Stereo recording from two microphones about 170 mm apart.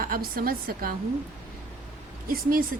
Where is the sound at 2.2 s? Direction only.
60° right (ahead or behind).